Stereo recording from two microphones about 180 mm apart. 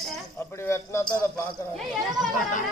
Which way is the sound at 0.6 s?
15° left (ahead or behind).